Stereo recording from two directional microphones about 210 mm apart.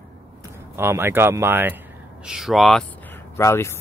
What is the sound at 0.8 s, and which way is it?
Speech, 10° right (ahead or behind).